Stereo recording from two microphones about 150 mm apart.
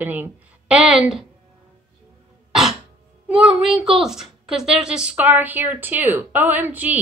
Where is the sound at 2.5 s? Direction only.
5° right (ahead or behind).